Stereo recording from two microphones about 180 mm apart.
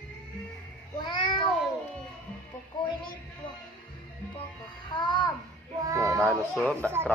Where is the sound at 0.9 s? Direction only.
25° left (ahead or behind).